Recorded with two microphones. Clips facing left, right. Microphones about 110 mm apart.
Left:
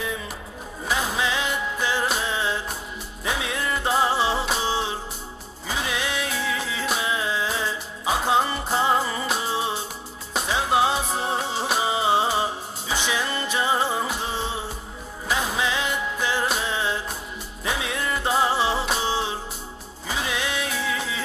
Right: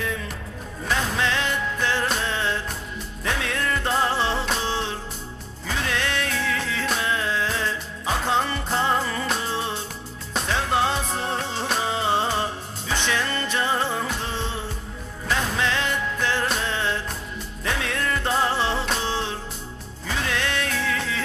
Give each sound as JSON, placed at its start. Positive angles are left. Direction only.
{"t": 0.8, "sound": "music", "side_deg": 5}